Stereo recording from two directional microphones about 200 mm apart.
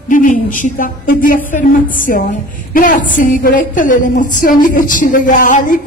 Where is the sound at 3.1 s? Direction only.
40° left (ahead or behind).